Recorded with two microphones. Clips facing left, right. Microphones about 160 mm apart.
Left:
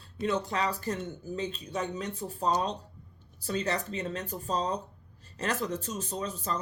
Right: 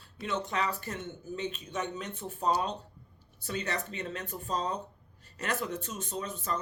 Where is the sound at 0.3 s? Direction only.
35° left (ahead or behind).